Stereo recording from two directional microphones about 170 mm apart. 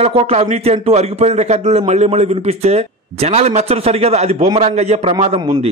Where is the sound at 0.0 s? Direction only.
35° right (ahead or behind).